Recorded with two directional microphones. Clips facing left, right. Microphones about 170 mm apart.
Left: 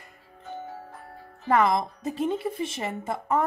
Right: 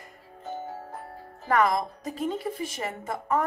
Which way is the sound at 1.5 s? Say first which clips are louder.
Left 1 dB; 20° left (ahead or behind).